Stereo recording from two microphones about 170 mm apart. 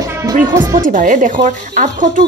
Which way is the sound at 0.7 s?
50° right (ahead or behind).